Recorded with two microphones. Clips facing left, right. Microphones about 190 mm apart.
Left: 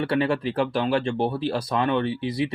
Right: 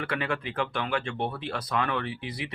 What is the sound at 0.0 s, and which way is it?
Speech, 30° left (ahead or behind).